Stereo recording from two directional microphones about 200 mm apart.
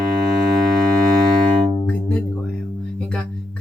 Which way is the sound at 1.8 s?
5° left (ahead or behind).